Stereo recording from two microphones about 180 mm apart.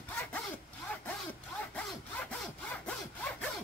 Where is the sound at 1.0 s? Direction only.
10° left (ahead or behind).